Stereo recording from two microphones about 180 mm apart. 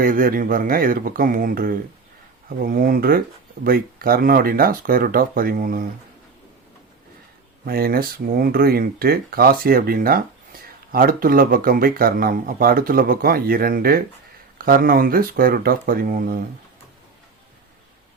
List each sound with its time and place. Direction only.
0.0 s speech: 50° right (ahead or behind)
7.6 s speech: 55° right (ahead or behind)